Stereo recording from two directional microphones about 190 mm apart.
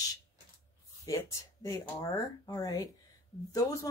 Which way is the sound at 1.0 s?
15° left (ahead or behind).